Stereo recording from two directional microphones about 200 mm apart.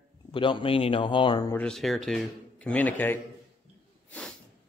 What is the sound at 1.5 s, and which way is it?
Speech, 5° left (ahead or behind).